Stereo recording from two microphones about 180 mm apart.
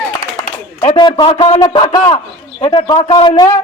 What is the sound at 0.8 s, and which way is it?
A man's voice, 30° left (ahead or behind).